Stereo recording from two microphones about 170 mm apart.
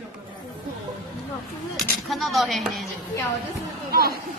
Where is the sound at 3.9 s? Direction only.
65° right (ahead or behind).